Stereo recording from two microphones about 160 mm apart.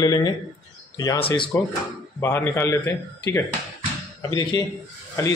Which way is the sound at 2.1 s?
15° left (ahead or behind).